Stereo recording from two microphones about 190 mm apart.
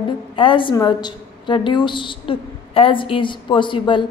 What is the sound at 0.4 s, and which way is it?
A woman's voice, 25° left (ahead or behind).